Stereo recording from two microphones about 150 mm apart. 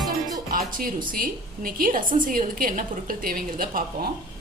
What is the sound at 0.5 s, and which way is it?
A woman's voice, 70° right (ahead or behind).